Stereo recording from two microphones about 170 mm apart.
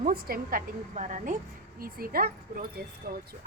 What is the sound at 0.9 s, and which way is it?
Speech, 45° right (ahead or behind).